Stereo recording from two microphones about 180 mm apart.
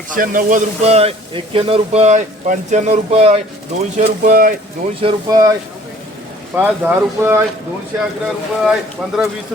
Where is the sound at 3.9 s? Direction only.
50° right (ahead or behind).